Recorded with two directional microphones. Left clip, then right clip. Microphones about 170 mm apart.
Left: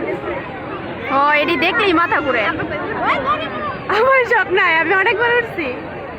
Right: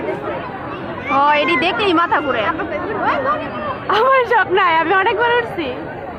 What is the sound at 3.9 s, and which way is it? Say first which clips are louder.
A man's voice: even; centre (ahead or behind).